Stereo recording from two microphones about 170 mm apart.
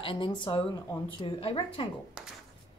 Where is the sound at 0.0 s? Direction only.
30° left (ahead or behind).